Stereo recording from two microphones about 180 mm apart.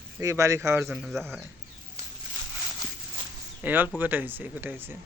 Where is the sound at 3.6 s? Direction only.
10° right (ahead or behind).